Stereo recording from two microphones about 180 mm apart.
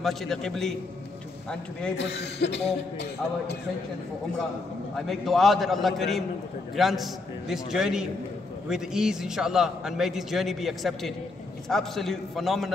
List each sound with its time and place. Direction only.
0.0 s a man's voice: centre (ahead or behind)
2.0 s a man's voice: 70° left (ahead or behind)
4.9 s a man's voice: centre (ahead or behind)